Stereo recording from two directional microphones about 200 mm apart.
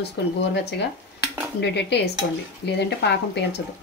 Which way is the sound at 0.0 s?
55° left (ahead or behind).